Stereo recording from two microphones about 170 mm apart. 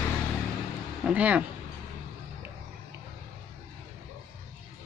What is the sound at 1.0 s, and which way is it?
Speech, 10° right (ahead or behind).